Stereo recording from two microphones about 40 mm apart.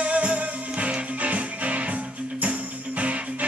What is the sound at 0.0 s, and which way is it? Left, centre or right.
Music, right.